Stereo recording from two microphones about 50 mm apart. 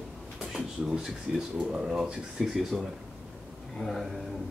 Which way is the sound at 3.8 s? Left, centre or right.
Centre.